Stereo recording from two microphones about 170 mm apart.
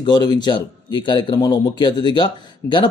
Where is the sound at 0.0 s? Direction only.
25° left (ahead or behind).